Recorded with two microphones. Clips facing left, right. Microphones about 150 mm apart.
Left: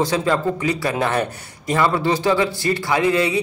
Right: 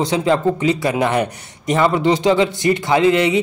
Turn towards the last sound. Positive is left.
turn(degrees=-20)  # may be behind; listen again after turning